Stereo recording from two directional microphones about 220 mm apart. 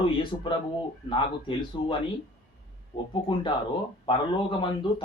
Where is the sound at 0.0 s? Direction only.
20° left (ahead or behind).